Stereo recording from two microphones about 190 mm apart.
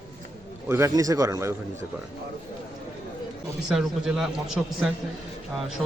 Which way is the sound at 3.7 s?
5° right (ahead or behind).